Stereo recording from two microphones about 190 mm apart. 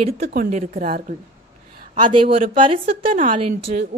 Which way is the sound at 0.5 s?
45° right (ahead or behind).